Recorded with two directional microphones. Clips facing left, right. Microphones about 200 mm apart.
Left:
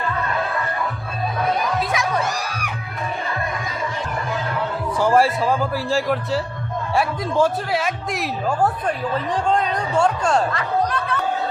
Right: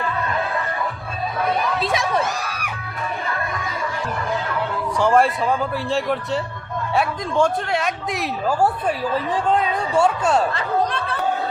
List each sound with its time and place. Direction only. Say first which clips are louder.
1.8 s crowd: right 1 dB; 25° right (ahead or behind)
4.9 s speech: even; 5° left (ahead or behind)
10.5 s a sound: even; 30° right (ahead or behind)